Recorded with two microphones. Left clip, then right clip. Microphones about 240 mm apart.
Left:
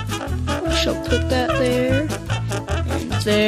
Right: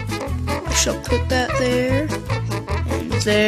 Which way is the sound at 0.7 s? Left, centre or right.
Centre.